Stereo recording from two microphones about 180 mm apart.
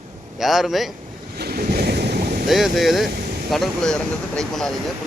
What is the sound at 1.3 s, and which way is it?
Ocean, 60° right (ahead or behind).